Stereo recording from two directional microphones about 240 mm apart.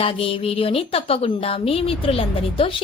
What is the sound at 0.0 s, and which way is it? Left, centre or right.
Speech, left.